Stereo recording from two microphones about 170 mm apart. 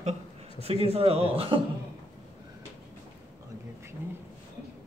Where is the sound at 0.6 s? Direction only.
35° right (ahead or behind).